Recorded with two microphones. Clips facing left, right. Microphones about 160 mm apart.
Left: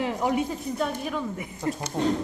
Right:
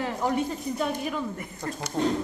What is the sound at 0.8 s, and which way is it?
A woman's voice, centre (ahead or behind).